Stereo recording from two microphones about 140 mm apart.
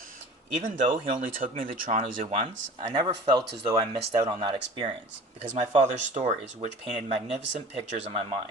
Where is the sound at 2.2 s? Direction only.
50° right (ahead or behind).